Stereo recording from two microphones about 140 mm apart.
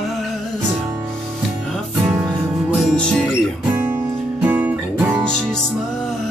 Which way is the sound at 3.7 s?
15° right (ahead or behind).